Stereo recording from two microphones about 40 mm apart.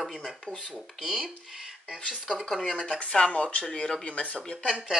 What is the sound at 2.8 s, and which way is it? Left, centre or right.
Speech, left.